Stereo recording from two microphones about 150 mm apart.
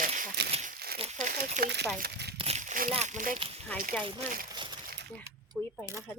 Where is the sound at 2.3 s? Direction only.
40° right (ahead or behind).